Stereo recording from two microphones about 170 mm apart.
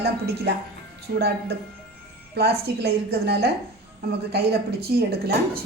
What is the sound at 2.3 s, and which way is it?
A woman's voice, 70° right (ahead or behind).